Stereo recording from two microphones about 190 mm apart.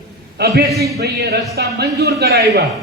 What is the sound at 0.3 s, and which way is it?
A man's voice, 55° right (ahead or behind).